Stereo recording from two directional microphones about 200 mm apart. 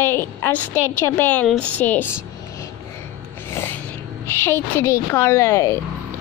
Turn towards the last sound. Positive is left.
turn(degrees=15)  # may be behind; listen again after turning